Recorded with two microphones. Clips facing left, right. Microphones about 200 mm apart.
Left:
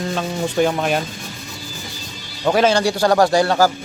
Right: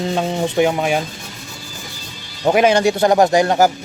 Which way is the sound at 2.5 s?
20° right (ahead or behind).